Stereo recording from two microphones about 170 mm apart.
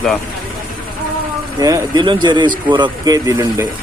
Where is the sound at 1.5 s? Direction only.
20° right (ahead or behind).